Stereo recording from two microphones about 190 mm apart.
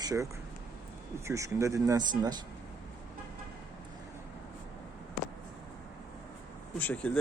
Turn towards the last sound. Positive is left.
turn(degrees=5)  # may be behind; listen again after turning